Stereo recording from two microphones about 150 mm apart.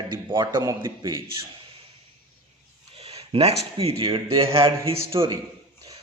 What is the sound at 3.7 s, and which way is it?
Speech, 40° right (ahead or behind).